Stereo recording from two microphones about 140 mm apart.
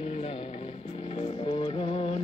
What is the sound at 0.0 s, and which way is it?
Music, 45° left (ahead or behind).